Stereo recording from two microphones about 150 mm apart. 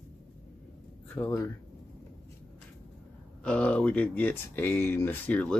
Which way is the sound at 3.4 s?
5° left (ahead or behind).